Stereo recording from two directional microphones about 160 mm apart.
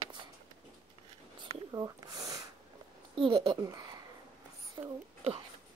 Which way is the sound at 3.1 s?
35° right (ahead or behind).